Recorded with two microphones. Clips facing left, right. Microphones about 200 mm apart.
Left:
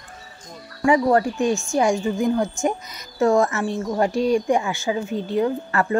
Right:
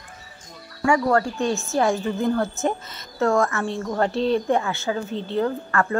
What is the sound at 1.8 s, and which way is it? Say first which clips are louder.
Speech: left 1 dB; 15° left (ahead or behind).